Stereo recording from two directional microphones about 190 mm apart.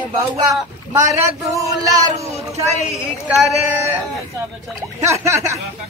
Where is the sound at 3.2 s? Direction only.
15° right (ahead or behind).